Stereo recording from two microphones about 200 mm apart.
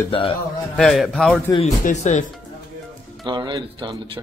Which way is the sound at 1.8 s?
35° left (ahead or behind).